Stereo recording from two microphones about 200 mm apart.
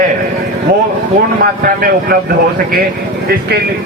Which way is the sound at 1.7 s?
45° right (ahead or behind).